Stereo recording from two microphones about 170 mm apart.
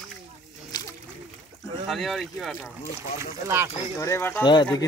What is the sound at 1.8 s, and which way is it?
Speech, centre (ahead or behind).